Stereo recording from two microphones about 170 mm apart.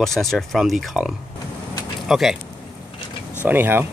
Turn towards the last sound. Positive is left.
turn(degrees=-15)  # may be behind; listen again after turning